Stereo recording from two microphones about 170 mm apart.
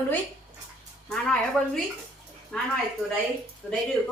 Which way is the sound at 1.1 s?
5° left (ahead or behind).